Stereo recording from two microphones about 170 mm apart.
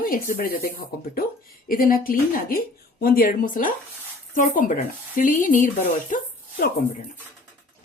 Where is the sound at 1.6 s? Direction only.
55° left (ahead or behind).